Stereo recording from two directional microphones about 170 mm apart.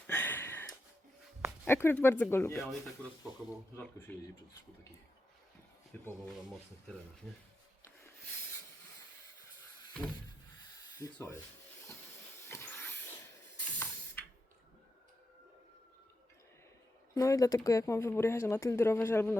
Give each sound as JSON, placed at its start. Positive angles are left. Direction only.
{"t": 0.1, "sound": "a sound", "side_deg": 10}
{"t": 1.6, "sound": "speech", "side_deg": 15}
{"t": 3.8, "sound": "speech", "side_deg": 15}
{"t": 5.9, "sound": "speech", "side_deg": 10}
{"t": 10.8, "sound": "rub", "side_deg": 20}
{"t": 12.5, "sound": "vacuum cleaner", "side_deg": 15}
{"t": 13.6, "sound": "spray", "side_deg": 10}
{"t": 17.2, "sound": "speech", "side_deg": 20}